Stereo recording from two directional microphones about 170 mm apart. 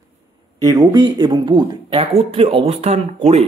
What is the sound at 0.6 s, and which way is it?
Speech, 20° right (ahead or behind).